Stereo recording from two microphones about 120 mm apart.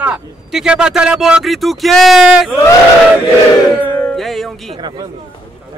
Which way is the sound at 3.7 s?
15° left (ahead or behind).